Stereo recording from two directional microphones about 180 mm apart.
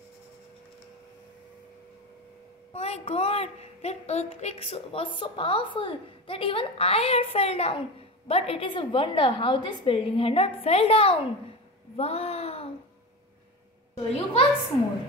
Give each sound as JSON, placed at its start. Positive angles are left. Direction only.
{"t": 2.7, "sound": "a woman's voice", "side_deg": 35}
{"t": 12.0, "sound": "a sound", "side_deg": 35}
{"t": 14.1, "sound": "a woman's voice", "side_deg": 30}